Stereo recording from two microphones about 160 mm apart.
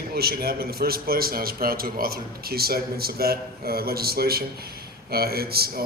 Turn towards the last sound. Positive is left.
turn(degrees=-75)  # may be behind; listen again after turning